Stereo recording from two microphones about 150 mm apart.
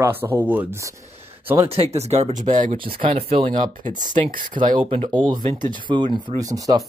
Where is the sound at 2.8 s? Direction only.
35° right (ahead or behind).